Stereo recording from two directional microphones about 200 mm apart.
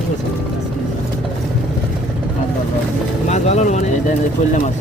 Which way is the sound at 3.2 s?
35° left (ahead or behind).